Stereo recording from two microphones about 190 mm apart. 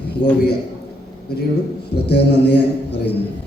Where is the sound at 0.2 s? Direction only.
65° left (ahead or behind).